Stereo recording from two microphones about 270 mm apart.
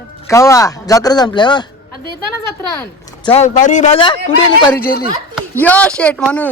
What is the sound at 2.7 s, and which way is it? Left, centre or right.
Speech, centre.